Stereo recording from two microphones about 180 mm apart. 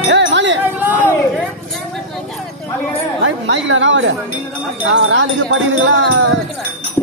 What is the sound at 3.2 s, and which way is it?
Wind chime, 90° right.